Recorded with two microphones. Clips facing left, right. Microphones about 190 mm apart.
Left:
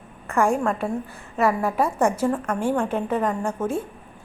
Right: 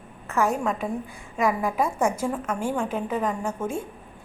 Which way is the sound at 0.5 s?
10° right (ahead or behind).